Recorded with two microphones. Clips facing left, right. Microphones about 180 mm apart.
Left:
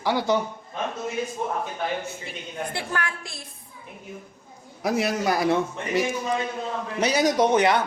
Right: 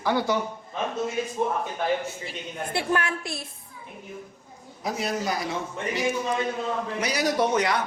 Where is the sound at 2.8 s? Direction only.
25° right (ahead or behind).